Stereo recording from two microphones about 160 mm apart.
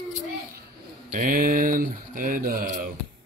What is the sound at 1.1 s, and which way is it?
Speech, 60° right (ahead or behind).